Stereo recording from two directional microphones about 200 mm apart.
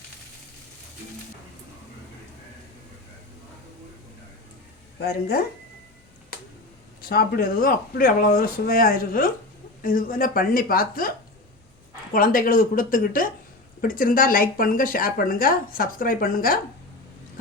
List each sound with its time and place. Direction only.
4.9 s speech: 50° left (ahead or behind)
7.0 s speech: 50° left (ahead or behind)
12.1 s speech: 45° left (ahead or behind)